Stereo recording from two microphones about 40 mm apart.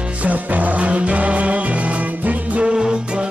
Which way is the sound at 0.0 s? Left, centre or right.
Right.